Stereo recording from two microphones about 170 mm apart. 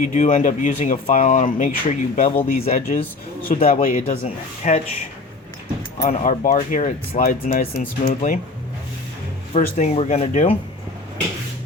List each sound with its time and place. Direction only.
0.0 s speech: 50° left (ahead or behind)
6.1 s speech: 50° left (ahead or behind)
7.2 s speech: 55° left (ahead or behind)
9.5 s speech: 40° left (ahead or behind)